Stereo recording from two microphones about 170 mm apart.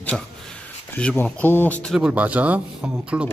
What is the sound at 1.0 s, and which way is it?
Speech, 5° left (ahead or behind).